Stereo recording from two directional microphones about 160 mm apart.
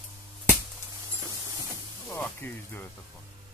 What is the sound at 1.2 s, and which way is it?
Music, 20° right (ahead or behind).